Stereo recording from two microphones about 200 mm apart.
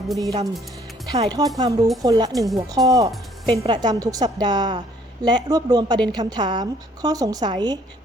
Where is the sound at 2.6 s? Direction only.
15° right (ahead or behind).